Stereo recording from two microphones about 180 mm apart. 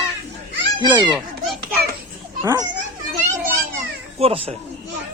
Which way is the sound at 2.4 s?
20° right (ahead or behind).